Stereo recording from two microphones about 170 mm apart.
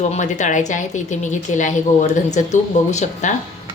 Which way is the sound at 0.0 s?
45° left (ahead or behind).